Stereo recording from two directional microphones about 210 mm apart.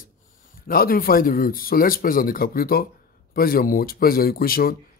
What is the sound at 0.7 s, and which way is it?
Speech, 45° left (ahead or behind).